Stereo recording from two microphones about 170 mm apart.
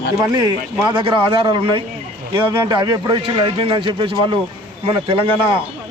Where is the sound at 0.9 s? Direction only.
30° right (ahead or behind).